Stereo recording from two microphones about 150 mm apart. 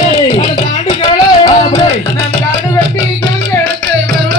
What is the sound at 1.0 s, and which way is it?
Music, 25° left (ahead or behind).